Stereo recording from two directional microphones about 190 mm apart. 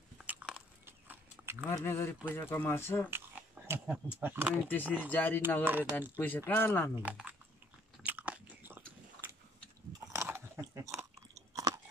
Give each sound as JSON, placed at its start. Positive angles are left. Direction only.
{"t": 0.2, "sound": "biting", "side_deg": -5}
{"t": 1.7, "sound": "speech", "side_deg": 15}
{"t": 3.1, "sound": "a sound", "side_deg": -10}
{"t": 3.9, "sound": "speech", "side_deg": -10}
{"t": 4.6, "sound": "speech", "side_deg": 10}
{"t": 5.6, "sound": "speech", "side_deg": -10}
{"t": 6.1, "sound": "speech", "side_deg": 10}
{"t": 7.0, "sound": "speech", "side_deg": -5}
{"t": 8.0, "sound": "biting", "side_deg": -10}
{"t": 10.1, "sound": "chewing", "side_deg": -15}